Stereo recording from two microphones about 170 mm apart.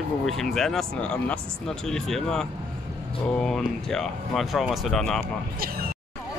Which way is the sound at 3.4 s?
5° left (ahead or behind).